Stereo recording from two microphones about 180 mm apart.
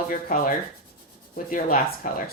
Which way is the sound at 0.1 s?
50° left (ahead or behind).